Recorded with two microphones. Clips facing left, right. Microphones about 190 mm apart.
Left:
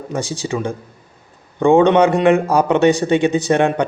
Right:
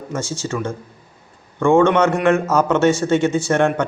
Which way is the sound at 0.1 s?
15° left (ahead or behind).